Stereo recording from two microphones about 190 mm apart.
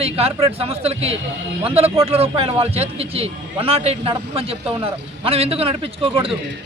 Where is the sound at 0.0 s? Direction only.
30° right (ahead or behind).